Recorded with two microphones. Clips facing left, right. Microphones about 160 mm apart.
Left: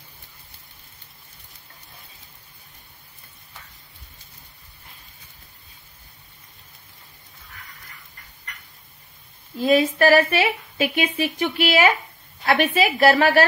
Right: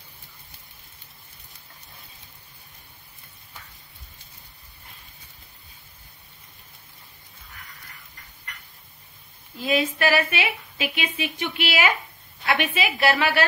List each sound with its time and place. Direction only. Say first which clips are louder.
9.6 s a woman's voice: left 6 dB; 40° left (ahead or behind)